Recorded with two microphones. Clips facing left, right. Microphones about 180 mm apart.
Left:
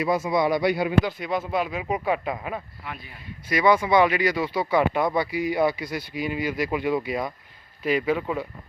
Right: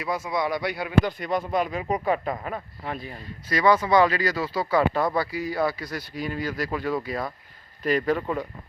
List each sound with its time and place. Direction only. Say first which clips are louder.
0.0 s speech: left 5 dB; 25° left (ahead or behind)
1.2 s speech: right 1 dB; 5° left (ahead or behind)
2.8 s speech: right 5 dB; 40° right (ahead or behind)
3.5 s speech: even; 10° left (ahead or behind)